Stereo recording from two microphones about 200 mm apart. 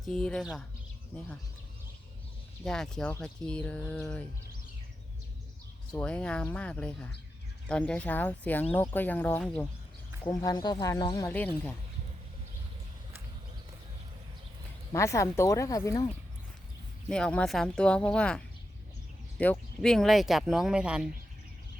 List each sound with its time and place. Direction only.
0.0 s speech: 5° left (ahead or behind)
2.6 s speech: 5° left (ahead or behind)
6.0 s speech: 5° left (ahead or behind)
10.2 s speech: 20° left (ahead or behind)
14.9 s speech: 15° left (ahead or behind)
17.1 s speech: 5° left (ahead or behind)